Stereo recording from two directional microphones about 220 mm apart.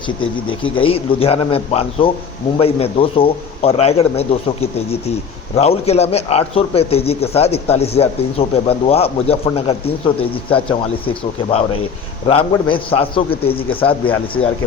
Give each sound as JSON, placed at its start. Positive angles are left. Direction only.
{"t": 0.3, "sound": "a man's voice", "side_deg": 25}
{"t": 11.0, "sound": "a man's voice", "side_deg": 25}